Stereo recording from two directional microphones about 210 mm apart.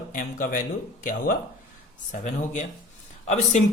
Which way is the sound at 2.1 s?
35° left (ahead or behind).